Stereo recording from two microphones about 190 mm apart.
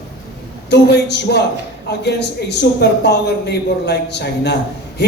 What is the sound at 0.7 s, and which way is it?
A man's voice, 60° left (ahead or behind).